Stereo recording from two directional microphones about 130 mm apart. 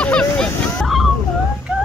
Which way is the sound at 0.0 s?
10° left (ahead or behind).